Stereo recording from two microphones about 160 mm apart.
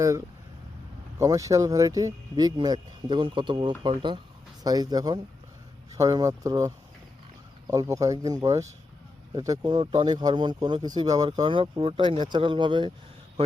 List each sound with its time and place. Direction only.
1.2 s speech: 20° right (ahead or behind)